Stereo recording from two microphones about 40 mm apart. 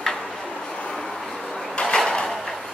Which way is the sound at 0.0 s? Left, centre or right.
Centre.